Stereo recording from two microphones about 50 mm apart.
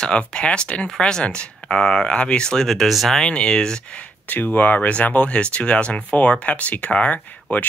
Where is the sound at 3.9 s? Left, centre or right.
Left.